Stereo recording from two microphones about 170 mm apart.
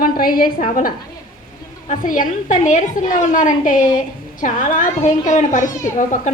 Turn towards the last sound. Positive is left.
turn(degrees=50)  # may be behind; listen again after turning